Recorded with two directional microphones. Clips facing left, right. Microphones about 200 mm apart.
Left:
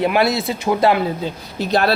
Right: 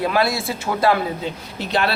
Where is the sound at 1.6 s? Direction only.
40° left (ahead or behind).